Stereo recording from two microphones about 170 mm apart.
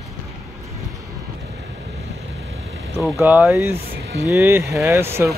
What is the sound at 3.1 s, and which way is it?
Speech, 15° right (ahead or behind).